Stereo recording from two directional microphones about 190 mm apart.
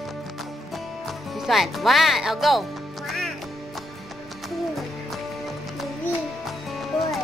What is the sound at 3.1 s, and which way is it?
Quack, centre (ahead or behind).